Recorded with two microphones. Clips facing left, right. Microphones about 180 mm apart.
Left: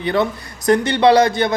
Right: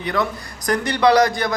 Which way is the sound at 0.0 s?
30° left (ahead or behind).